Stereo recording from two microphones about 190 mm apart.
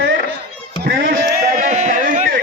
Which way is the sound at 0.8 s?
50° right (ahead or behind).